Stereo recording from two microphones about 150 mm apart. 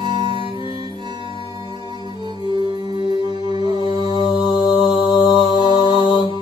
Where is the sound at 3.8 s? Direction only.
35° left (ahead or behind).